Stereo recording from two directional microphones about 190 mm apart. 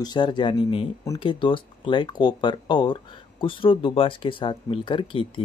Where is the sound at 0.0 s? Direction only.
25° left (ahead or behind).